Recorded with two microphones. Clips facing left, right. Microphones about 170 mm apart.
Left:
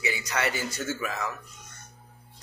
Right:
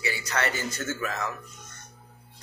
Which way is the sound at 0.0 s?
15° left (ahead or behind).